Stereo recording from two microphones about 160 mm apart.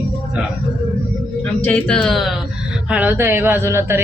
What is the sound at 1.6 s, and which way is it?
A man's voice, 10° left (ahead or behind).